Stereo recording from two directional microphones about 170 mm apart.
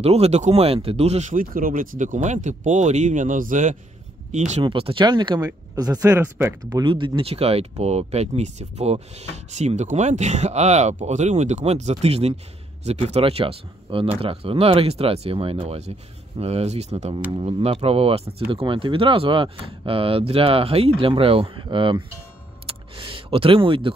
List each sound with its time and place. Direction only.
0.0 s speech: 40° right (ahead or behind)
4.5 s speech: 35° right (ahead or behind); by 6.8 s 15° right (ahead or behind)
6.8 s speech: 30° right (ahead or behind)
22.7 s a sound: 30° right (ahead or behind)